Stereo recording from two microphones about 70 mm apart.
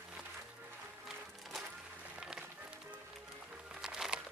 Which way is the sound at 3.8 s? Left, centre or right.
Centre.